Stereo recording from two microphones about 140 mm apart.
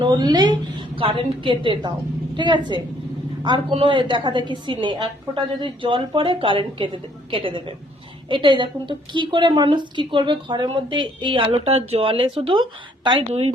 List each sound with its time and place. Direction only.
0.0 s a woman's voice: 30° right (ahead or behind)